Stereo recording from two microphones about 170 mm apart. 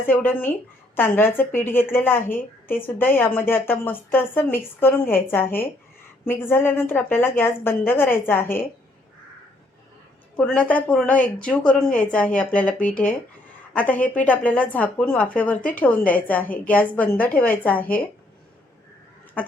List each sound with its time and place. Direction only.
0.1 s a woman's voice: 10° left (ahead or behind)
10.3 s a woman's voice: 5° left (ahead or behind)
19.4 s a sound: 10° left (ahead or behind)